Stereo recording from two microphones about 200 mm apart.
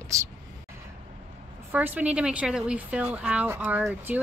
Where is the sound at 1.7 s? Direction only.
10° right (ahead or behind).